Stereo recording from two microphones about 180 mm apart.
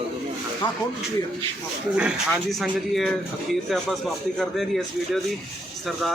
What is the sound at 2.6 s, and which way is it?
Speech, centre (ahead or behind).